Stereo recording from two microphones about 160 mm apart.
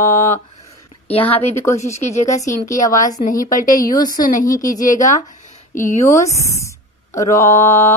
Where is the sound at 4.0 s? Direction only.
25° left (ahead or behind).